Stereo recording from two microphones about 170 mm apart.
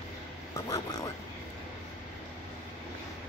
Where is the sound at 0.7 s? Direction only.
20° left (ahead or behind).